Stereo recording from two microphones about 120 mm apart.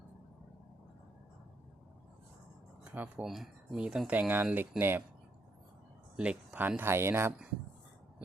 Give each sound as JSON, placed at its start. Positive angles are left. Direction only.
{"t": 2.8, "sound": "speech", "side_deg": -10}
{"t": 3.2, "sound": "speech", "side_deg": 0}
{"t": 6.1, "sound": "speech", "side_deg": -10}